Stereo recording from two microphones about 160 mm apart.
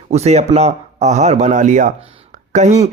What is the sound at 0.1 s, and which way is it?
Speech, 40° right (ahead or behind).